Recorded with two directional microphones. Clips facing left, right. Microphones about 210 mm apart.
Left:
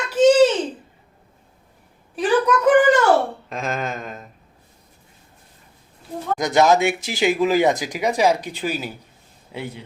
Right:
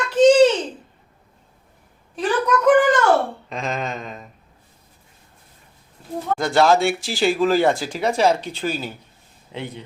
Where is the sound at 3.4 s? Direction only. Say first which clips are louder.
Even; centre (ahead or behind).